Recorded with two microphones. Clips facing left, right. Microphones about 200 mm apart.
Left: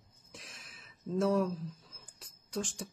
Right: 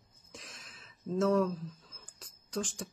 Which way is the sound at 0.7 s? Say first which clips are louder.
Right 1 dB; 10° left (ahead or behind).